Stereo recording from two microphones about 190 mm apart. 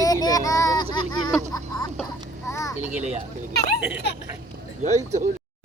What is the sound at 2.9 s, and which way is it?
Speech, 40° right (ahead or behind).